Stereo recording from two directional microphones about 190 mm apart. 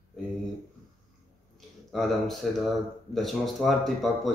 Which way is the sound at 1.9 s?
Centre (ahead or behind).